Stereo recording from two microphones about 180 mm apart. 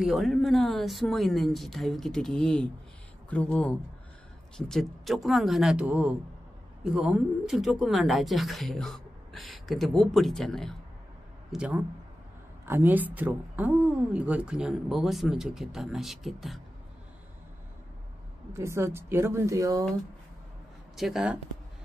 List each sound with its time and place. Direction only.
0.0 s a woman's voice: centre (ahead or behind)
18.5 s speech: 15° right (ahead or behind)
20.9 s speech: centre (ahead or behind)